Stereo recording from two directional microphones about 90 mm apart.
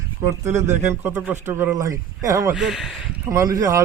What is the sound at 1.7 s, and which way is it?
Speech, 40° right (ahead or behind).